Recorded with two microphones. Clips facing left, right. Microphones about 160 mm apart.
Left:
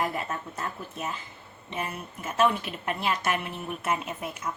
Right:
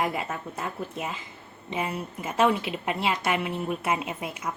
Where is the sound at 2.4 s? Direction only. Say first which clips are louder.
Right 2 dB; 90° right.